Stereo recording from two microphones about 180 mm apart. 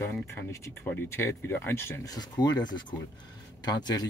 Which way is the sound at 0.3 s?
15° left (ahead or behind).